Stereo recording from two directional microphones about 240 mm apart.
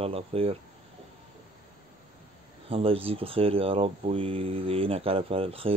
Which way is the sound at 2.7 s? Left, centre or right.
Right.